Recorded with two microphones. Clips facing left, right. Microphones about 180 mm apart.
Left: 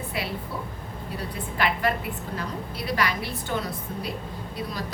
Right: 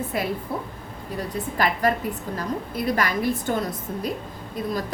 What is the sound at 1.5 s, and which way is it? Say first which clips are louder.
A woman's voice: right 3 dB; 40° right (ahead or behind).